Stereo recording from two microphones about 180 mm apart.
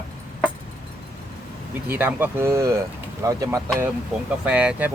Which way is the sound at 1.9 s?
10° right (ahead or behind).